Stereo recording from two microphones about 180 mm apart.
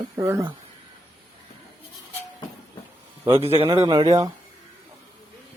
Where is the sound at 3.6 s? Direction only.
25° right (ahead or behind).